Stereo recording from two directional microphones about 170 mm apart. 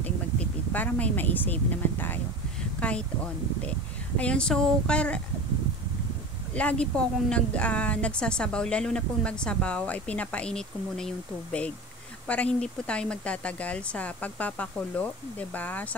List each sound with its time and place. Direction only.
0.0 s a woman's voice: 10° left (ahead or behind)
4.2 s a woman's voice: 5° left (ahead or behind)
6.5 s a woman's voice: 5° left (ahead or behind)